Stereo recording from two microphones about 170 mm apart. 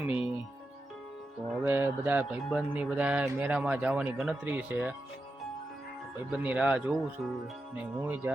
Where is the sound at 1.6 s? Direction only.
10° right (ahead or behind).